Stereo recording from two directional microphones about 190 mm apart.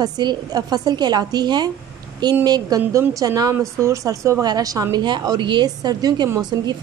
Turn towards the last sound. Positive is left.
turn(degrees=-20)  # may be behind; listen again after turning